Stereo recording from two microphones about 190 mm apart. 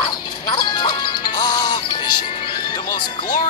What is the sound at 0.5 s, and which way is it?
Music, 20° left (ahead or behind).